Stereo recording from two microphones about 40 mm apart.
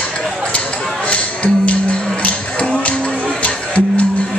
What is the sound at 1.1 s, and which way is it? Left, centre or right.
Music, left.